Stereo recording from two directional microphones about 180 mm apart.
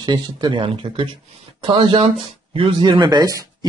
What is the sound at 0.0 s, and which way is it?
Speech, 25° right (ahead or behind).